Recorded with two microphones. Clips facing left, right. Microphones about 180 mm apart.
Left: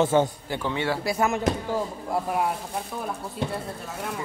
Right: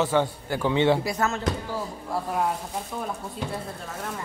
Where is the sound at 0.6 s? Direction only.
20° right (ahead or behind).